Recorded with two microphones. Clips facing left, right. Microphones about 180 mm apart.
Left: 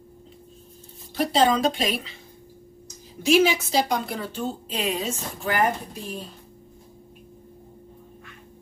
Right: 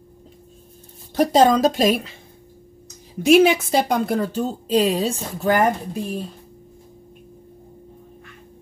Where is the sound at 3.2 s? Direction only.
55° right (ahead or behind).